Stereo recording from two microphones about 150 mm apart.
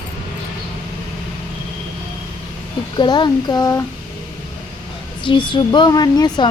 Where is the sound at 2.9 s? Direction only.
30° left (ahead or behind).